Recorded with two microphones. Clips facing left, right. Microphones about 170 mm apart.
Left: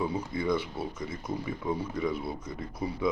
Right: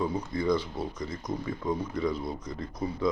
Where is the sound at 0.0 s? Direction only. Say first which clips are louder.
Right 1 dB; 10° left (ahead or behind).